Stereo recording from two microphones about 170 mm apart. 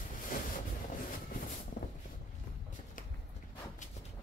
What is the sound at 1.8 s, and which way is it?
Vehicle, 80° left.